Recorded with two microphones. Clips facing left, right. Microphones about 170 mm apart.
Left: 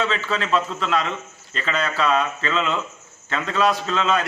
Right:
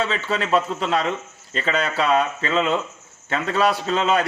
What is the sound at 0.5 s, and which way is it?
A man's voice, 35° right (ahead or behind).